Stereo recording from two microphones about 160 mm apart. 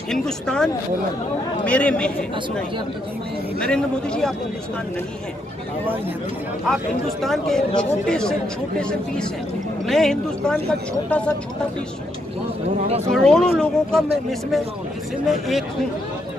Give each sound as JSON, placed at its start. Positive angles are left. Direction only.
{"t": 0.1, "sound": "speech", "side_deg": 5}
{"t": 3.5, "sound": "speech", "side_deg": 5}
{"t": 7.2, "sound": "speech", "side_deg": 0}
{"t": 12.8, "sound": "speech", "side_deg": -40}
{"t": 13.1, "sound": "speech", "side_deg": 5}
{"t": 15.2, "sound": "speech", "side_deg": 0}